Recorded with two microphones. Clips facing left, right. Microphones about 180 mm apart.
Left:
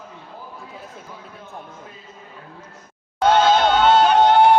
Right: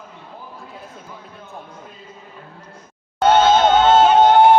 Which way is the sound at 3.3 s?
20° right (ahead or behind).